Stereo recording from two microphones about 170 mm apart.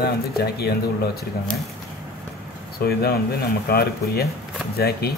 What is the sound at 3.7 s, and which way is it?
Speech, 65° left (ahead or behind).